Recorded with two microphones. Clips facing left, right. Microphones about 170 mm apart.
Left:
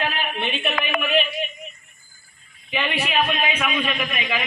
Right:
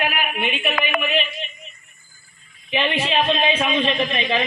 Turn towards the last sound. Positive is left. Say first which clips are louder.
# right 5 dB
turn(degrees=-30)  # may be behind; listen again after turning